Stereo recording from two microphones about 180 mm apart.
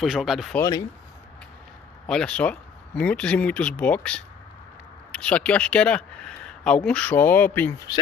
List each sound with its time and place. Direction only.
0.0 s speech: centre (ahead or behind)
0.6 s speech: 20° left (ahead or behind)
2.0 s speech: 5° left (ahead or behind)